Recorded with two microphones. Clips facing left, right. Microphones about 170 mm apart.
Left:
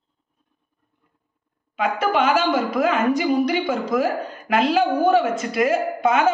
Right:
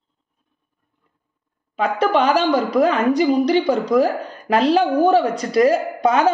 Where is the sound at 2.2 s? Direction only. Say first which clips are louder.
Right 2 dB; 35° right (ahead or behind).